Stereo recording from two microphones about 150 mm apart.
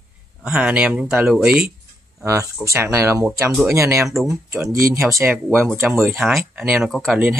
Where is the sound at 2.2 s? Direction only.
20° right (ahead or behind).